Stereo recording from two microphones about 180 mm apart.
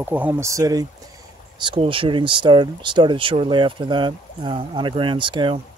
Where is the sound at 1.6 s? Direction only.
30° right (ahead or behind).